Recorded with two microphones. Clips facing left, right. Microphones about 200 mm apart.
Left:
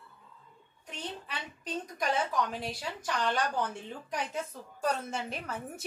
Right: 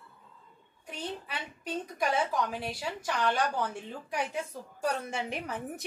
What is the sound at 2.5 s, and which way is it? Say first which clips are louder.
Speech: right 2 dB; 10° right (ahead or behind).